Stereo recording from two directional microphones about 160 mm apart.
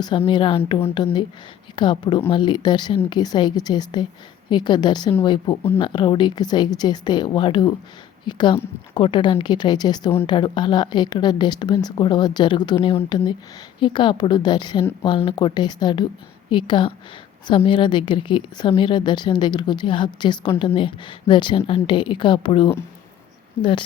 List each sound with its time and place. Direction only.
0.3 s a woman's voice: 30° left (ahead or behind)